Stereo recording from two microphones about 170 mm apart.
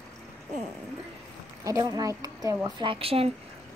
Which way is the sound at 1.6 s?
20° right (ahead or behind).